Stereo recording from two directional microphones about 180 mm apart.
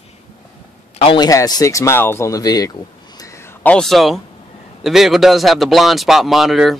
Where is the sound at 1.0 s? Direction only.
25° left (ahead or behind).